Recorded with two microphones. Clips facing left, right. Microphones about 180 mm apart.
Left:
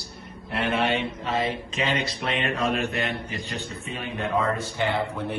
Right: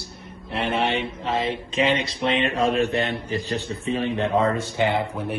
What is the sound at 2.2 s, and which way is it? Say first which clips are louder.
A man's voice: right 6 dB; 30° right (ahead or behind).